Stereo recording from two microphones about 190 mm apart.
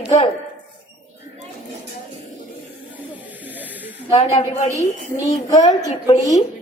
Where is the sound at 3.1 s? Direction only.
10° right (ahead or behind).